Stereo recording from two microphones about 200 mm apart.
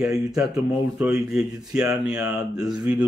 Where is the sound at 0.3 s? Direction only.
5° right (ahead or behind).